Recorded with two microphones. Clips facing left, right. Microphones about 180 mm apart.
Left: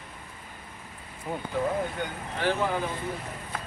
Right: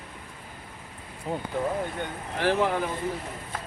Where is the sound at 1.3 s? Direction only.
25° right (ahead or behind).